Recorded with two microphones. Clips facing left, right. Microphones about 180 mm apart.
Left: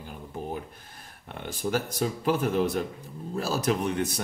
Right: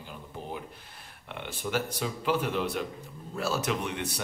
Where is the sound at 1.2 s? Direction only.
40° left (ahead or behind).